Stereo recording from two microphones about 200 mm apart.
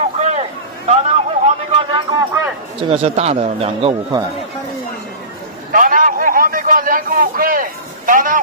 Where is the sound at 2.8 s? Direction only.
30° right (ahead or behind).